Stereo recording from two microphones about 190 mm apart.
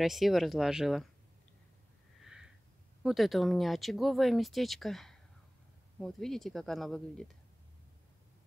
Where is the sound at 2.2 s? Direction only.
5° right (ahead or behind).